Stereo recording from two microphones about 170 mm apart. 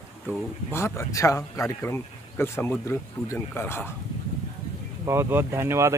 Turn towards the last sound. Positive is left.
turn(degrees=-15)  # may be behind; listen again after turning